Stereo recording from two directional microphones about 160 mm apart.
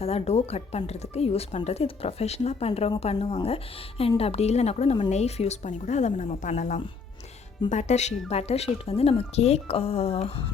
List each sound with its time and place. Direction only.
0.0 s a woman's voice: 40° left (ahead or behind)